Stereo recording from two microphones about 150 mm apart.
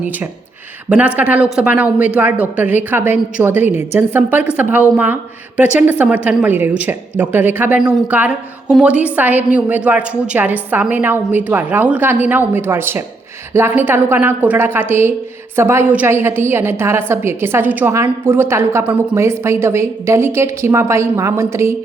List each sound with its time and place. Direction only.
0.9 s a woman's voice: 10° right (ahead or behind)